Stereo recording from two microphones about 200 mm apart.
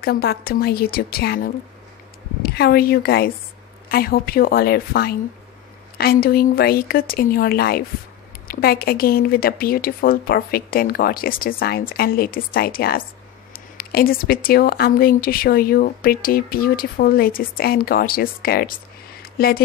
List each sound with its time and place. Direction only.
0.0 s speech: 50° left (ahead or behind)